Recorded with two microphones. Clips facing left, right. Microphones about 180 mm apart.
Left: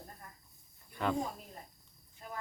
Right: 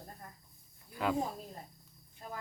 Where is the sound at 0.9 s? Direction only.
5° right (ahead or behind).